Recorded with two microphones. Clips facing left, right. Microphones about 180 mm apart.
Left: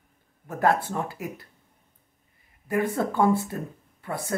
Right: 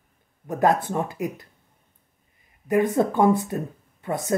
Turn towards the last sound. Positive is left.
turn(degrees=-20)  # may be behind; listen again after turning